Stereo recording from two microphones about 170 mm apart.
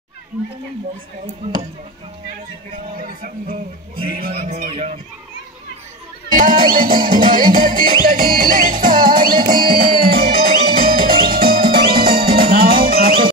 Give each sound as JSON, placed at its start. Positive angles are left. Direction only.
{"t": 3.0, "sound": "a man's voice", "side_deg": -50}
{"t": 4.3, "sound": "music", "side_deg": -40}
{"t": 6.3, "sound": "music", "side_deg": -55}